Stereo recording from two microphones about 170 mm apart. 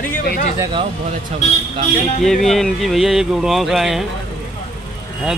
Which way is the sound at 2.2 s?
Centre (ahead or behind).